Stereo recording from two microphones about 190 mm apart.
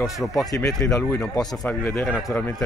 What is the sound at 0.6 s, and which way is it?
Speech, 15° left (ahead or behind).